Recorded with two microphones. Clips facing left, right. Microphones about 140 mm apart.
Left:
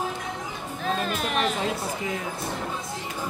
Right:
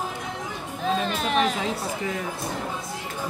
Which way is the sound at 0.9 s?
Centre (ahead or behind).